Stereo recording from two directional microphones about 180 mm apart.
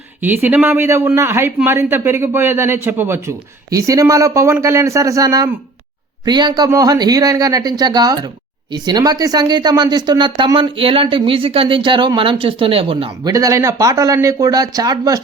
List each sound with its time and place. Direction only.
0.2 s a man's voice: 10° right (ahead or behind); by 13.3 s 30° right (ahead or behind)
13.3 s a man's voice: 15° right (ahead or behind)